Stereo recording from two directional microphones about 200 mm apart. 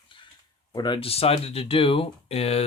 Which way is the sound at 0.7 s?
20° left (ahead or behind).